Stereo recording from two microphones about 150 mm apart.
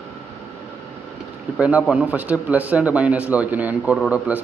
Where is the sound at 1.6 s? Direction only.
10° right (ahead or behind).